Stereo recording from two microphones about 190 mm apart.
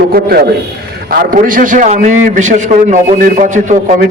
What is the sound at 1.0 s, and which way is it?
A man's voice, 50° right (ahead or behind).